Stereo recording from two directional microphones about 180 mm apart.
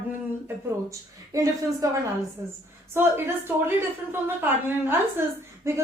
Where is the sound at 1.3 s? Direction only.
15° right (ahead or behind).